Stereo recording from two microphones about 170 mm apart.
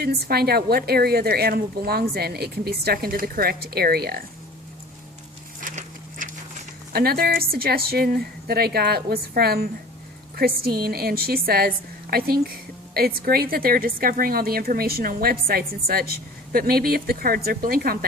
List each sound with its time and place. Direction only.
0.0 s a woman's voice: 65° right (ahead or behind)
5.5 s a sound: 50° right (ahead or behind)
6.9 s a woman's voice: 65° right (ahead or behind)